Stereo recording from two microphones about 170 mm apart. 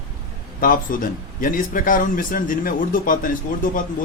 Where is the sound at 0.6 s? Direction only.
55° left (ahead or behind).